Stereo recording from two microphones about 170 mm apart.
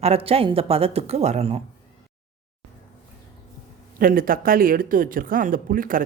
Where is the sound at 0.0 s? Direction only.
35° right (ahead or behind).